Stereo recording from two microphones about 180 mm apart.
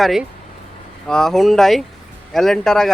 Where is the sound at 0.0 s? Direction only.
Centre (ahead or behind).